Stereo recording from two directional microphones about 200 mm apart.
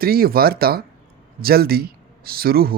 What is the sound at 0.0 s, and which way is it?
Speech, 50° right (ahead or behind).